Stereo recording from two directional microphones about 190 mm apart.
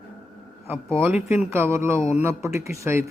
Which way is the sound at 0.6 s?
10° right (ahead or behind).